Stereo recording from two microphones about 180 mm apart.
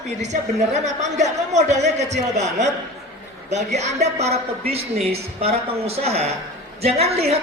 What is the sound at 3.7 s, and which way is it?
A woman's voice, 40° right (ahead or behind).